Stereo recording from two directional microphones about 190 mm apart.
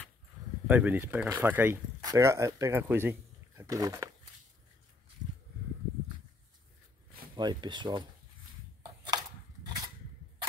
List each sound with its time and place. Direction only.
0.7 s speech: 10° right (ahead or behind)
7.3 s speech: 25° right (ahead or behind)
9.0 s a sound: 20° right (ahead or behind)